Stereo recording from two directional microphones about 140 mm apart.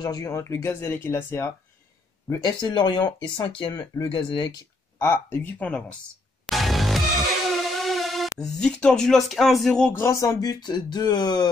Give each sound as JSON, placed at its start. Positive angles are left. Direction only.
{"t": 0.0, "sound": "speech", "side_deg": 25}
{"t": 2.6, "sound": "speech", "side_deg": 35}
{"t": 4.9, "sound": "speech", "side_deg": 15}
{"t": 6.4, "sound": "music", "side_deg": 0}
{"t": 9.9, "sound": "speech", "side_deg": 20}